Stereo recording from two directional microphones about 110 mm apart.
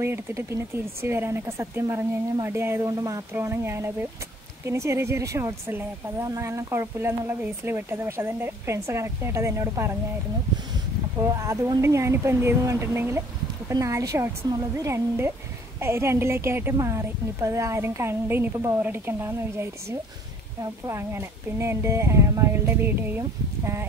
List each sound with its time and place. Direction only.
0.0 s speech: 25° right (ahead or behind)
11.1 s speech: 30° right (ahead or behind)